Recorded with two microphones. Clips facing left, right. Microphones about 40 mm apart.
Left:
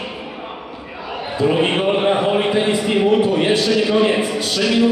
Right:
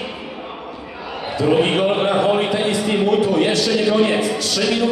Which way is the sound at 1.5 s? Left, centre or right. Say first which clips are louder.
Right 1 dB; left.